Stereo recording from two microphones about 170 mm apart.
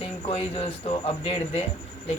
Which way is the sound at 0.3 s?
35° left (ahead or behind).